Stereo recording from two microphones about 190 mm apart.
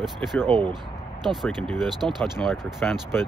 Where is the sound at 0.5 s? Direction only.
25° right (ahead or behind).